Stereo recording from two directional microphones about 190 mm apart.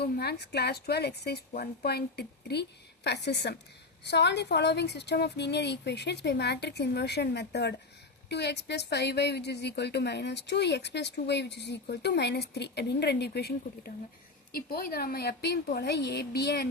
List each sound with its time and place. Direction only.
0.0 s speech: 55° left (ahead or behind)